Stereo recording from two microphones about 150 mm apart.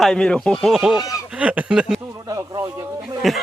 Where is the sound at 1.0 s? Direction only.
25° left (ahead or behind).